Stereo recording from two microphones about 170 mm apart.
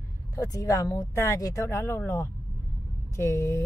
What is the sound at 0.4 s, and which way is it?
Speech, 20° left (ahead or behind).